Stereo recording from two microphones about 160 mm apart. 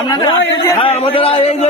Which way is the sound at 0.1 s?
20° left (ahead or behind).